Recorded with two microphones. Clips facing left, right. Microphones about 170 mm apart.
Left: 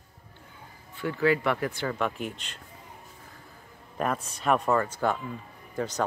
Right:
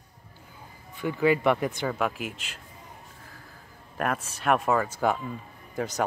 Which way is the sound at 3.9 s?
5° right (ahead or behind).